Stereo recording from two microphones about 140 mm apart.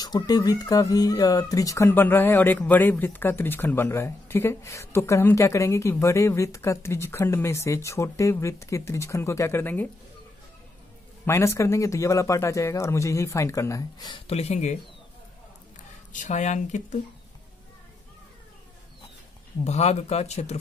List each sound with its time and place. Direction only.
0.0 s speech: 25° left (ahead or behind)
11.2 s speech: 20° left (ahead or behind)
14.2 s speech: 45° left (ahead or behind)
16.1 s speech: 65° left (ahead or behind)
19.6 s speech: 50° left (ahead or behind)